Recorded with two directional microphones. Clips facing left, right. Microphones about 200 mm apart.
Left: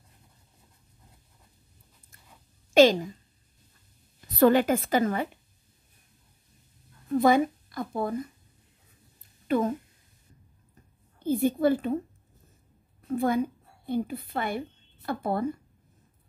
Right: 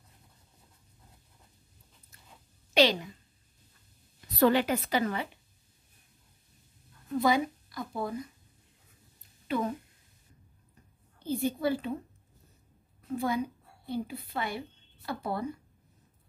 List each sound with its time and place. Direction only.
2.7 s a woman's voice: 45° left (ahead or behind)
4.3 s a woman's voice: 50° left (ahead or behind)
7.2 s speech: 50° left (ahead or behind)
9.5 s a woman's voice: 45° left (ahead or behind)
11.2 s a woman's voice: 50° left (ahead or behind)
13.2 s a woman's voice: 50° left (ahead or behind)